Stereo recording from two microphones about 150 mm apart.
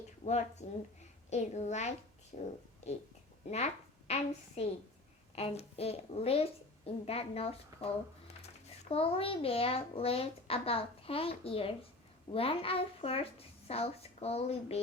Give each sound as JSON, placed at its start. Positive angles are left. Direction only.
{"t": 0.6, "sound": "a woman's voice", "side_deg": 50}
{"t": 8.9, "sound": "a child's voice", "side_deg": 40}